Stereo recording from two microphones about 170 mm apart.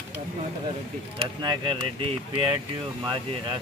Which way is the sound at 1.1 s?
30° right (ahead or behind).